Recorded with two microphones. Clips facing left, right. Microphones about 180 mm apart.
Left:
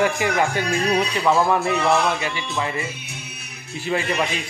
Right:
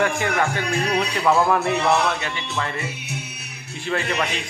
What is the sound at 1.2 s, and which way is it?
A man's voice, centre (ahead or behind).